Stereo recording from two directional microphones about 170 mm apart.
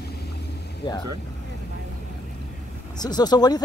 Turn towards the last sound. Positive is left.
turn(degrees=25)  # may be behind; listen again after turning